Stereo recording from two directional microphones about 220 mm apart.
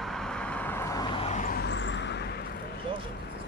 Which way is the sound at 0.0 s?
Centre (ahead or behind).